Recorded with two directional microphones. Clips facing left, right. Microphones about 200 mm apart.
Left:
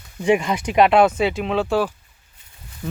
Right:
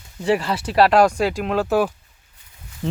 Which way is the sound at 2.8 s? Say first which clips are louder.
Right 4 dB; 25° right (ahead or behind).